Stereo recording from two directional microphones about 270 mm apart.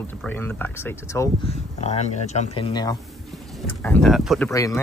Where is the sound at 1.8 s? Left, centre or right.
Left.